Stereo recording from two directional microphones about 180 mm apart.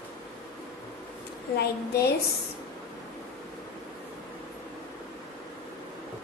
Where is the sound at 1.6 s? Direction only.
65° left (ahead or behind).